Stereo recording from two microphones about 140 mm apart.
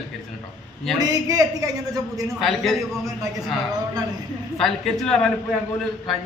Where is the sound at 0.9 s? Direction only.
25° right (ahead or behind).